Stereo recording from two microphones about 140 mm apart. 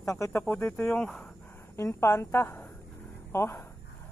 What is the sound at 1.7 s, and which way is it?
Speech, 20° left (ahead or behind).